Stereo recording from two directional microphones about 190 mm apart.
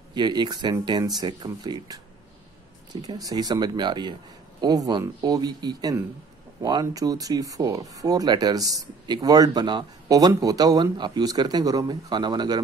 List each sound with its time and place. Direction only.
0.1 s speech: 25° right (ahead or behind)